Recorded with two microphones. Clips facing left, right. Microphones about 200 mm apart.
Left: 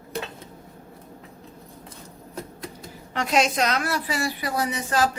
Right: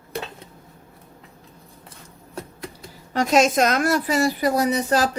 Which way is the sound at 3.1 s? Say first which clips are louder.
Right 5 dB; 40° right (ahead or behind).